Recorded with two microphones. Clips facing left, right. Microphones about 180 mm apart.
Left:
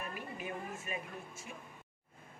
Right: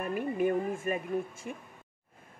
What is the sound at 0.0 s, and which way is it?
A woman's voice, 50° right (ahead or behind).